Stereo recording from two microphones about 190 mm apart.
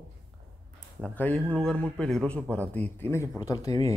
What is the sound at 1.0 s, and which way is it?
Speech, 10° left (ahead or behind).